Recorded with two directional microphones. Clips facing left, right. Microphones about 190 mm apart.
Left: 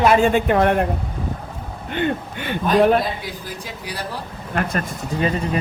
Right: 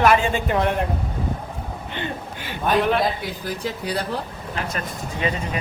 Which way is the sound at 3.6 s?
60° right (ahead or behind).